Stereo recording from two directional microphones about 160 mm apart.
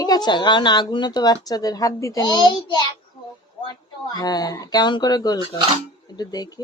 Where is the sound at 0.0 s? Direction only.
25° left (ahead or behind).